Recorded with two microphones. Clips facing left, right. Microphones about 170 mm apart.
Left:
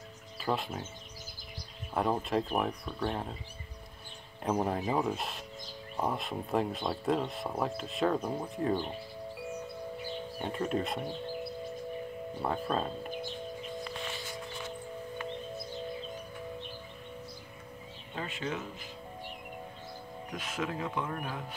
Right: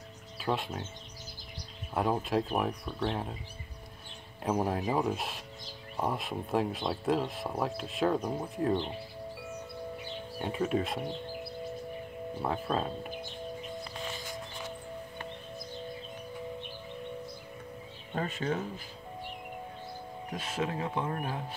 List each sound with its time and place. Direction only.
0.4 s speech: centre (ahead or behind)
2.0 s speech: centre (ahead or behind)
4.4 s speech: centre (ahead or behind)
10.4 s speech: 5° right (ahead or behind)
12.4 s speech: centre (ahead or behind)
18.1 s speech: 45° right (ahead or behind)
20.3 s speech: 30° right (ahead or behind)